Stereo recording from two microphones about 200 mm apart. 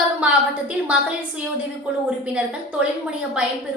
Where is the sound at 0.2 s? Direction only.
5° right (ahead or behind).